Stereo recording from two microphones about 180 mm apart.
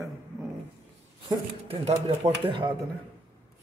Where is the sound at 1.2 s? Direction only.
35° right (ahead or behind).